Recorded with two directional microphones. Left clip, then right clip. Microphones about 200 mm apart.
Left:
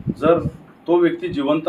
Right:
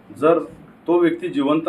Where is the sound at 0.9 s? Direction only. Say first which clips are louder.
Left 1 dB; 15° right (ahead or behind).